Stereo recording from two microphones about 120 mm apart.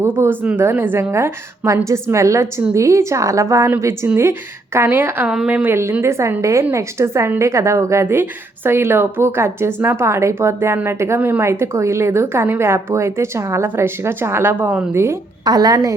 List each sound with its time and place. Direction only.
0.0 s a woman's voice: 20° right (ahead or behind)
14.9 s a woman's voice: 25° right (ahead or behind)